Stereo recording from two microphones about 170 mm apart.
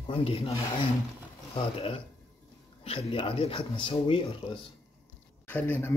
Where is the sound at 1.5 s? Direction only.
35° left (ahead or behind).